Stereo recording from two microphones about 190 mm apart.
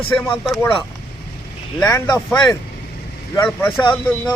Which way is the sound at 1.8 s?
15° left (ahead or behind).